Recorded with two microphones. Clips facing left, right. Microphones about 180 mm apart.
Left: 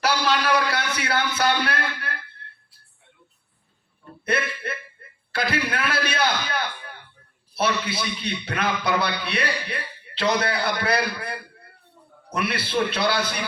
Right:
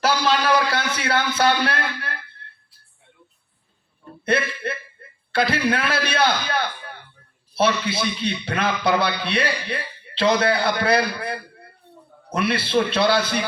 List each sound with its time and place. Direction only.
0.0 s speech: 25° right (ahead or behind)
4.3 s a man's voice: 30° right (ahead or behind)